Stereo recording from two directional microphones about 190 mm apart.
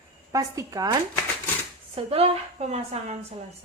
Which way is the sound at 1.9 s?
30° right (ahead or behind).